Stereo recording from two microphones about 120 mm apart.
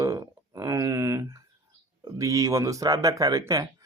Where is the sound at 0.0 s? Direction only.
30° right (ahead or behind).